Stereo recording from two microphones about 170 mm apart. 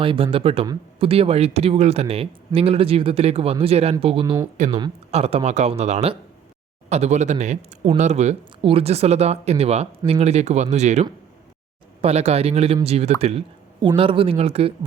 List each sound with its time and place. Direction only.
0.0 s speech: 30° right (ahead or behind)
4.5 s speech: 45° right (ahead or behind)
12.0 s speech: 40° right (ahead or behind)